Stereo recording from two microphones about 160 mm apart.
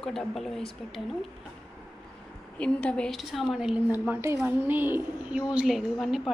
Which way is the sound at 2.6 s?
5° left (ahead or behind).